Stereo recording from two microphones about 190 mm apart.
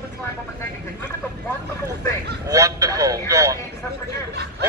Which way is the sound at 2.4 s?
15° right (ahead or behind).